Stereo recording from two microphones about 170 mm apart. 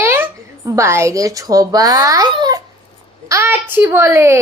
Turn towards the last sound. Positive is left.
turn(degrees=-15)  # may be behind; listen again after turning